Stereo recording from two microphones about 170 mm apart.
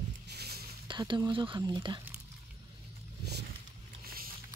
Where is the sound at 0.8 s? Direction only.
30° right (ahead or behind).